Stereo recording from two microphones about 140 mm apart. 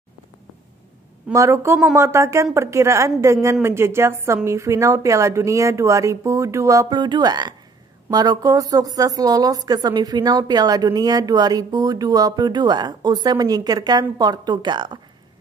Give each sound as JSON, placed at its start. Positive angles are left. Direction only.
{"t": 1.3, "sound": "a woman's voice", "side_deg": -20}